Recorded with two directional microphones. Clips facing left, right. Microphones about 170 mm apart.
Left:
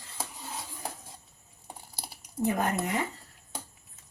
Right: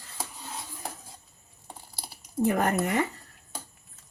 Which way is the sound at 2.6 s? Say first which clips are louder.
Right 4 dB; 70° right (ahead or behind).